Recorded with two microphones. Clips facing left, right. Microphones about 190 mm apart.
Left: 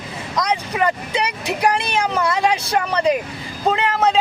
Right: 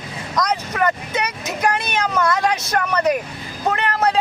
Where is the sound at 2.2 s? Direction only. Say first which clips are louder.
Right 2 dB; 10° left (ahead or behind).